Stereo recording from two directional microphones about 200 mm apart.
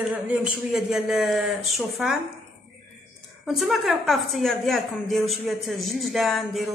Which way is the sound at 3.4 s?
Centre (ahead or behind).